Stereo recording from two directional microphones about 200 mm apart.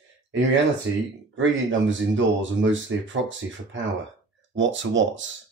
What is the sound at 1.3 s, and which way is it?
Speech, 70° right (ahead or behind).